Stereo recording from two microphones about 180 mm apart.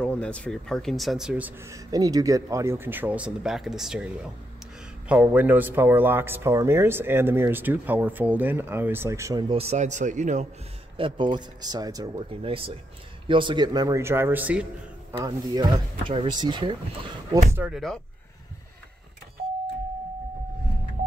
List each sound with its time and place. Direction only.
0.0 s speech: 5° left (ahead or behind); by 10.4 s 40° right (ahead or behind)
11.0 s speech: 25° right (ahead or behind); by 14.7 s 10° right (ahead or behind)
15.1 s speech: 20° right (ahead or behind)
17.3 s speech: 15° right (ahead or behind)
17.7 s speech: 5° left (ahead or behind)